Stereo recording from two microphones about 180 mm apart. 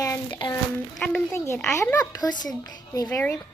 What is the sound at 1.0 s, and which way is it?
Speech, 5° left (ahead or behind).